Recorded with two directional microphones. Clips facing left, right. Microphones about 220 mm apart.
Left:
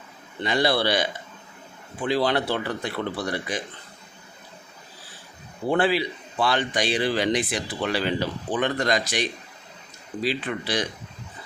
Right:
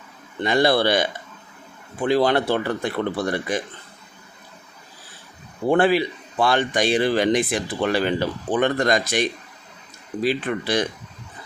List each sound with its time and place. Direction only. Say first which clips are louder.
0.4 s a man's voice: right 4 dB; 50° right (ahead or behind)
2.0 s a man's voice: right 4 dB; 50° right (ahead or behind)
5.6 s a man's voice: right 4 dB; 50° right (ahead or behind)